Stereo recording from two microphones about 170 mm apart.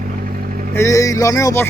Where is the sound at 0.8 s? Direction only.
20° left (ahead or behind).